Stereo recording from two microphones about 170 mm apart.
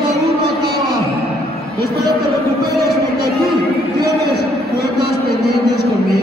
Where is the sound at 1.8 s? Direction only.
70° right (ahead or behind).